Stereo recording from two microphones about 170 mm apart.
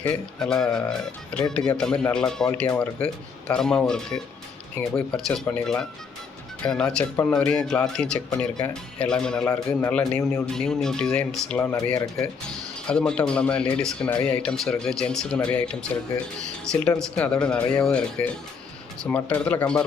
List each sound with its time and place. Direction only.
0.0 s speech: 5° left (ahead or behind)
10.0 s speech: 15° left (ahead or behind)
10.4 s speech: 5° left (ahead or behind)
12.9 s speech: 5° left (ahead or behind)
17.2 s speech: 5° left (ahead or behind)